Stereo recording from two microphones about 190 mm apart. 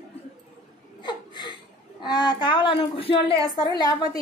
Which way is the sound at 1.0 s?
25° left (ahead or behind).